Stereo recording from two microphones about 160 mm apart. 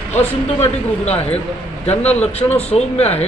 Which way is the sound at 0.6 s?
40° left (ahead or behind).